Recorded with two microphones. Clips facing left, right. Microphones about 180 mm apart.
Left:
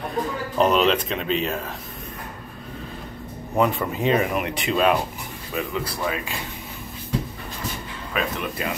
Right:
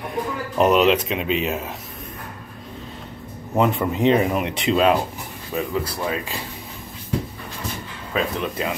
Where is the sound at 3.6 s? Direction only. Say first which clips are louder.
Right 2 dB; 20° right (ahead or behind).